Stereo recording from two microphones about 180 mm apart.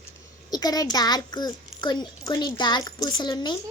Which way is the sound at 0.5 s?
20° left (ahead or behind).